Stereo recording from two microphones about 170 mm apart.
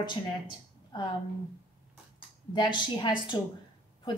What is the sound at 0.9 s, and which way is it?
Speech, 25° left (ahead or behind).